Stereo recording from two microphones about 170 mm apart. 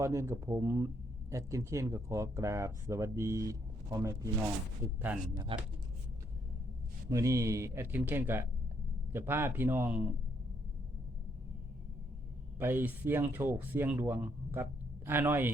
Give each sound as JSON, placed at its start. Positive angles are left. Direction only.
{"t": 0.0, "sound": "speech", "side_deg": -15}
{"t": 5.1, "sound": "speech", "side_deg": -10}
{"t": 5.5, "sound": "speech", "side_deg": -30}
{"t": 7.1, "sound": "speech", "side_deg": -20}
{"t": 12.5, "sound": "speech", "side_deg": -10}